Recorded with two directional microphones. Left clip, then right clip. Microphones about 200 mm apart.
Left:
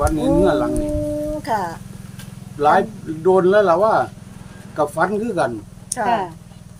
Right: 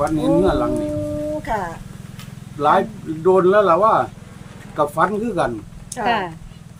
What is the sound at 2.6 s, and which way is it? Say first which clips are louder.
Speech: left 1 dB; 5° right (ahead or behind).